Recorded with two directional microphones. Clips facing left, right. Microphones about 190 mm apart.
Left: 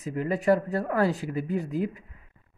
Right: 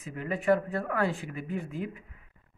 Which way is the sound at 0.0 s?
40° left (ahead or behind).